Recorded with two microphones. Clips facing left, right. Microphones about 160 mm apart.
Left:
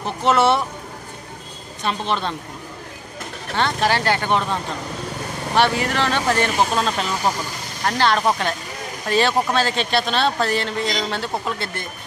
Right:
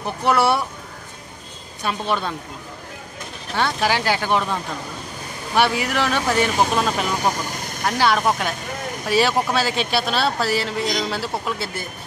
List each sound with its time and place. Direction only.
0.4 s speech: 20° left (ahead or behind)
1.9 s speech: 5° right (ahead or behind)
3.5 s speech: 10° right (ahead or behind)
5.6 s speech: 10° right (ahead or behind)